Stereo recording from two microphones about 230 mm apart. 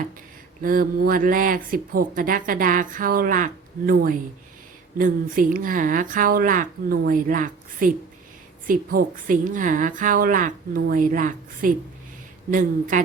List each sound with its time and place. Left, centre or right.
0.6 s speech: right